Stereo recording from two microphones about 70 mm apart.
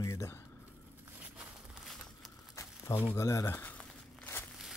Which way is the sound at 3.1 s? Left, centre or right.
Left.